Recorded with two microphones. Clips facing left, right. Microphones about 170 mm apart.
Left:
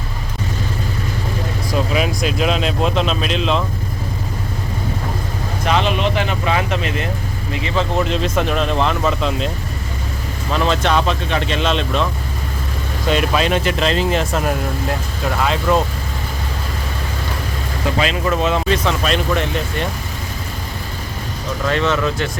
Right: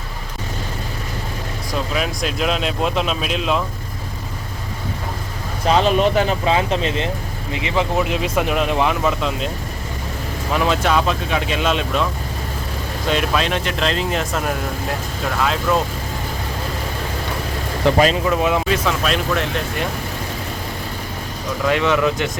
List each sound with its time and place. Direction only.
1.9 s speech: centre (ahead or behind)
5.6 s speech: 40° right (ahead or behind); by 9.5 s 5° right (ahead or behind)
10.5 s speech: 5° right (ahead or behind)
13.1 s speech: centre (ahead or behind)
17.9 s speech: 40° right (ahead or behind)
18.3 s speech: 15° right (ahead or behind)
21.7 s speech: 15° right (ahead or behind)